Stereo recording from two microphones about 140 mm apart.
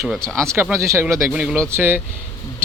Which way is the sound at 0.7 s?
20° right (ahead or behind).